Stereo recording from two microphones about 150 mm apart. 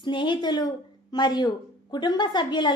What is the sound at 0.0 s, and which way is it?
A woman's voice, 30° left (ahead or behind).